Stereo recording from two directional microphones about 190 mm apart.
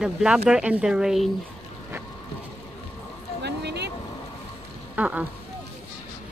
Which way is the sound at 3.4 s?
60° right (ahead or behind).